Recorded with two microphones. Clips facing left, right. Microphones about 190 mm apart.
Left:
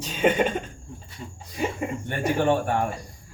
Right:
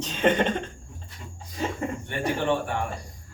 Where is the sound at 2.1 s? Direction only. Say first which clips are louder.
Left 4 dB; 45° left (ahead or behind).